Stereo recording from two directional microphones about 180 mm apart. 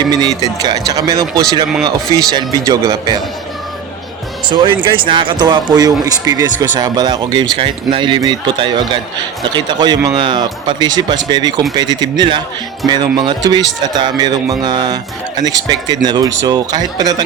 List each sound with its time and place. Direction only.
0.1 s speech: 20° right (ahead or behind)
4.4 s speech: 25° right (ahead or behind)